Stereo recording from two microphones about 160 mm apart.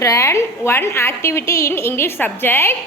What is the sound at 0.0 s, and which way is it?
A woman's voice, 20° left (ahead or behind).